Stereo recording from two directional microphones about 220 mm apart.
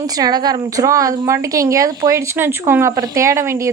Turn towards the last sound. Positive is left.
turn(degrees=-10)  # may be behind; listen again after turning